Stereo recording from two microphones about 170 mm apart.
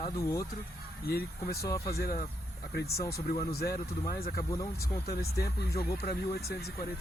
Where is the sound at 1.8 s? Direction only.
60° left (ahead or behind).